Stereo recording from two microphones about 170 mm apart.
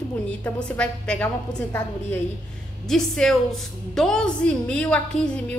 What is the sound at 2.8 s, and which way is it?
A woman's voice, centre (ahead or behind).